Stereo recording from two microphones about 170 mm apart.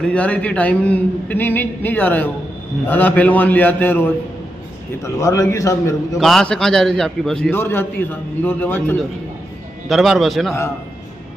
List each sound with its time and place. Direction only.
0.0 s a man's voice: 5° left (ahead or behind)
6.1 s a man's voice: centre (ahead or behind)
9.8 s a man's voice: centre (ahead or behind)